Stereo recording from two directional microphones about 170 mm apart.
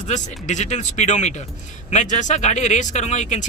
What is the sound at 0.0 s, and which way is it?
Speech, 45° left (ahead or behind).